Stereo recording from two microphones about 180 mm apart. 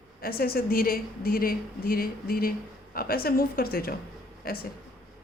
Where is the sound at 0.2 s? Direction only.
55° left (ahead or behind).